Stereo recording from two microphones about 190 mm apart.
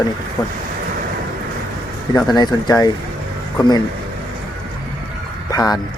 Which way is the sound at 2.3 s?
20° left (ahead or behind).